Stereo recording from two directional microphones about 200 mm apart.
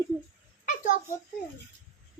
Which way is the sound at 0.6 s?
40° left (ahead or behind).